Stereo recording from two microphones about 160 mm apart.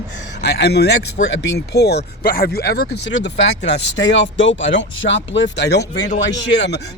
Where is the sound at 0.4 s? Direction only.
90° left.